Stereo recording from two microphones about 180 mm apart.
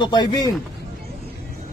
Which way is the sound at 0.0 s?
25° left (ahead or behind).